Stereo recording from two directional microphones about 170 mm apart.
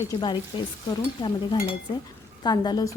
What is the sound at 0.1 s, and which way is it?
Speech, 25° left (ahead or behind).